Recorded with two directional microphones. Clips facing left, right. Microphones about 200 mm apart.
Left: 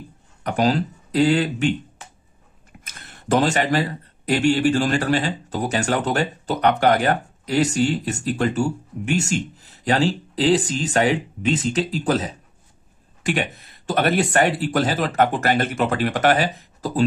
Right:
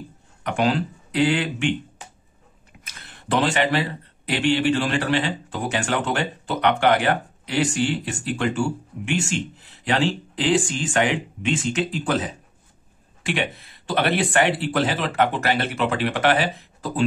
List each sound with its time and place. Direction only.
0.4 s speech: 40° left (ahead or behind)
2.8 s speech: 50° left (ahead or behind)